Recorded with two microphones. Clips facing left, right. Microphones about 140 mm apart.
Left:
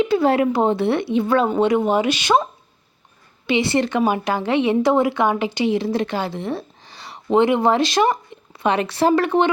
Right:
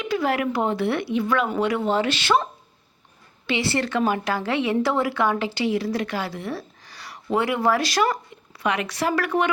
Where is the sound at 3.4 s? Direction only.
20° left (ahead or behind).